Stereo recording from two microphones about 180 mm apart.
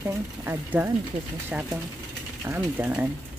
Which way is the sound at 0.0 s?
10° right (ahead or behind).